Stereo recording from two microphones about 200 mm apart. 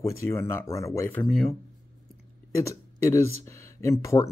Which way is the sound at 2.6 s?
15° left (ahead or behind).